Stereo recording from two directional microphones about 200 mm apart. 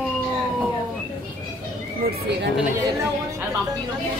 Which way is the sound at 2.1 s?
55° right (ahead or behind).